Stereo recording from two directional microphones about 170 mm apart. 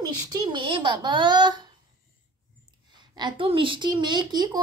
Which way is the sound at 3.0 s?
25° right (ahead or behind).